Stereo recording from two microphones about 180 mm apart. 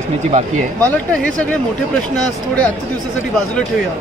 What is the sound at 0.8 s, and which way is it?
Speech, 10° left (ahead or behind).